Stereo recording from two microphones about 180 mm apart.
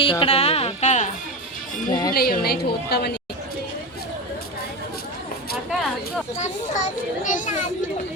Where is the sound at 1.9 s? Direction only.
20° left (ahead or behind).